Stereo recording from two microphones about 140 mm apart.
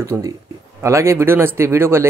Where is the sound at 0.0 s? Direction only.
20° right (ahead or behind).